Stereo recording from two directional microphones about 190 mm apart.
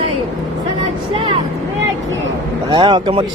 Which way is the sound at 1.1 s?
30° right (ahead or behind).